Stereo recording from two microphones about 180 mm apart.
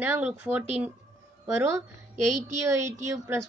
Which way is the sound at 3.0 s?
15° right (ahead or behind).